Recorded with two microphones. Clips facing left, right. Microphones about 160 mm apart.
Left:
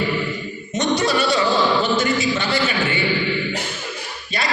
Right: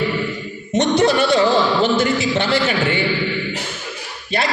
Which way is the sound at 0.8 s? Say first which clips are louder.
Right 4 dB; 60° right (ahead or behind).